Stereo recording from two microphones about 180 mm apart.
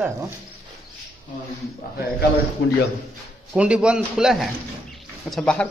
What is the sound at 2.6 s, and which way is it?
Speech, 90° left.